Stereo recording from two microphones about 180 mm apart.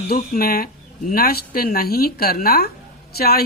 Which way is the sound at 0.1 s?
55° left (ahead or behind).